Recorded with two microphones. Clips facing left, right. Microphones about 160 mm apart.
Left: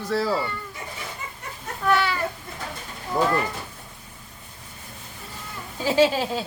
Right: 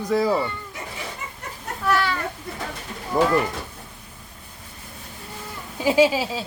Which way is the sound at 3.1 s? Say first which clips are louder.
Right 3 dB; 5° right (ahead or behind).